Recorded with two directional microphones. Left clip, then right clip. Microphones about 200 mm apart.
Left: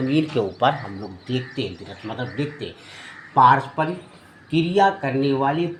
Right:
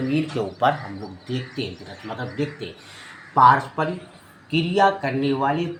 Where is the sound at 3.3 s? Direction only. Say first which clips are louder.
Even; 25° left (ahead or behind).